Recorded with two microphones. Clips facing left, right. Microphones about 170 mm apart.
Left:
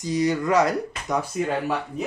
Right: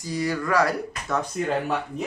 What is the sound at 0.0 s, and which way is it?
Speech, 20° left (ahead or behind).